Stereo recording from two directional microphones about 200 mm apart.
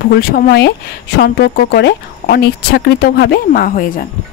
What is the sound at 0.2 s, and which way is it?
A woman's voice, 50° left (ahead or behind).